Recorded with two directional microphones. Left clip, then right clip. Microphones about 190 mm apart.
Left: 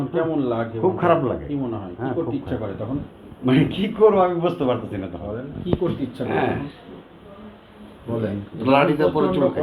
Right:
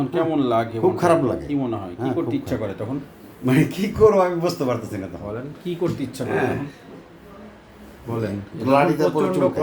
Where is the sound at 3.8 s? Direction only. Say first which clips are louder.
Right 1 dB; 25° right (ahead or behind).